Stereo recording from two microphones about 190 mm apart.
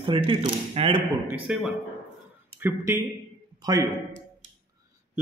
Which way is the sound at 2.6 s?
15° right (ahead or behind).